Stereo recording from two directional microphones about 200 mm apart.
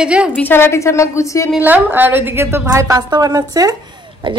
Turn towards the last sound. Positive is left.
turn(degrees=-20)  # may be behind; listen again after turning